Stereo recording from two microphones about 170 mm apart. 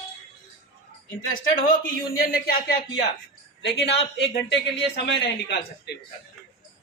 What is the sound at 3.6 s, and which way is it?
Speech, 85° left.